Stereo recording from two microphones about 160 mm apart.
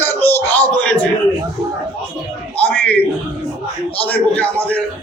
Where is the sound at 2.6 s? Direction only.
10° left (ahead or behind).